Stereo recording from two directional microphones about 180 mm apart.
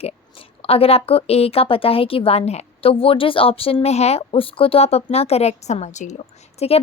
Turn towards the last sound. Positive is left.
turn(degrees=40)  # may be behind; listen again after turning